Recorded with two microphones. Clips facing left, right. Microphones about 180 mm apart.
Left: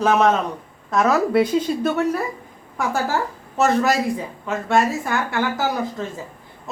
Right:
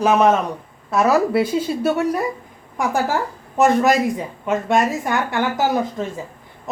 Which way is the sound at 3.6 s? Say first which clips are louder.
Right 3 dB; 15° right (ahead or behind).